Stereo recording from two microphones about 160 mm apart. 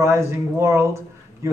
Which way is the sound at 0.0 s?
15° right (ahead or behind).